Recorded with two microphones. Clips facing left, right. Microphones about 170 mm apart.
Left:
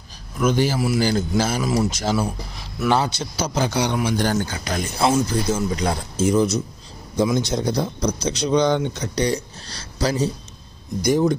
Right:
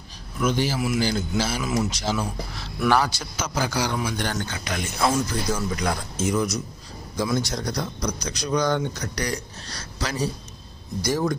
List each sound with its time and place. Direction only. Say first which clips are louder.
0.4 s a man's voice: left 4 dB; 45° left (ahead or behind)
2.0 s a man's voice: left 4 dB; 45° left (ahead or behind)
2.9 s speech: left 1 dB; 25° left (ahead or behind)
11.0 s speech: left 6 dB; 20° left (ahead or behind)